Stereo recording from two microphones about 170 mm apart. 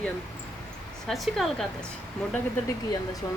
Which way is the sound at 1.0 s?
Centre (ahead or behind).